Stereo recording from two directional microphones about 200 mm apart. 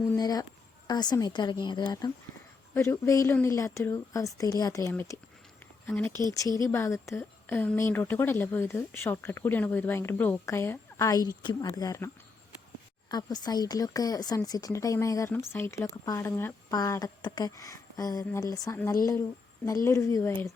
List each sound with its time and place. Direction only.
0.2 s a woman's voice: 20° left (ahead or behind)